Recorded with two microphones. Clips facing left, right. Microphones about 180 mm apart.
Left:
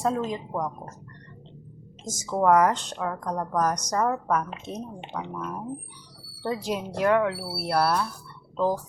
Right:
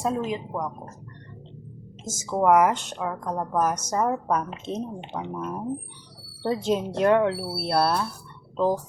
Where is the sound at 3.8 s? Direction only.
20° right (ahead or behind).